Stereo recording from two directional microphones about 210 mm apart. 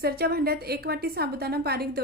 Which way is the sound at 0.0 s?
45° right (ahead or behind).